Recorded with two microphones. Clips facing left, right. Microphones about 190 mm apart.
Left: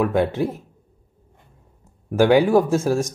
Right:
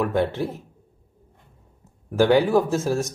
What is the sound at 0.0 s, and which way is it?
Speech, 15° left (ahead or behind).